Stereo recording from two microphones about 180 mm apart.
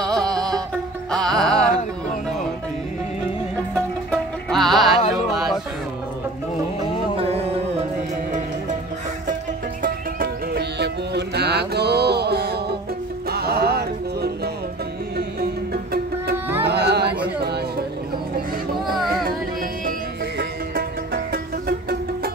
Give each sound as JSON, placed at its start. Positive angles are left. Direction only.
{"t": 0.0, "sound": "music", "side_deg": 5}
{"t": 3.7, "sound": "music", "side_deg": 5}
{"t": 6.8, "sound": "music", "side_deg": -30}
{"t": 9.8, "sound": "music", "side_deg": -55}
{"t": 15.7, "sound": "music", "side_deg": -60}
{"t": 16.6, "sound": "a sound", "side_deg": -65}
{"t": 20.3, "sound": "music", "side_deg": -55}